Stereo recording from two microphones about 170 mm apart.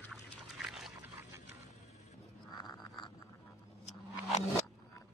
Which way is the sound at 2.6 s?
25° left (ahead or behind).